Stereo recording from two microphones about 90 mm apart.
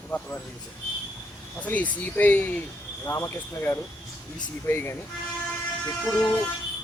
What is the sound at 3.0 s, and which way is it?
Speech, 35° left (ahead or behind).